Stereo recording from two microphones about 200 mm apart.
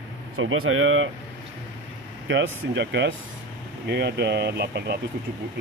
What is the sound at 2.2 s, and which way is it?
Speech, 65° right (ahead or behind).